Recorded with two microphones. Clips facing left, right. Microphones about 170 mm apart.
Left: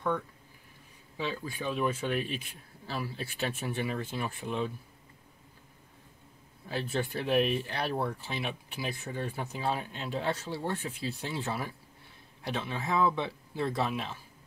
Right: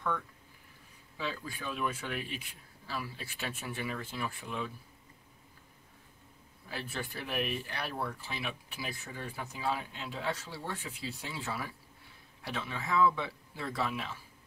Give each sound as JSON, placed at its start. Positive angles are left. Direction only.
{"t": 1.1, "sound": "speech", "side_deg": 25}
{"t": 6.7, "sound": "speech", "side_deg": 25}